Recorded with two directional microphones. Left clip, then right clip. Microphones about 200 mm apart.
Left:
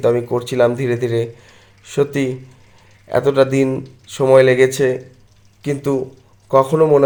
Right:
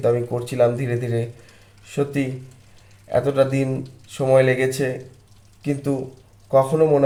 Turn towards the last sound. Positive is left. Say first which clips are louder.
# left 4 dB
turn(degrees=25)  # may be behind; listen again after turning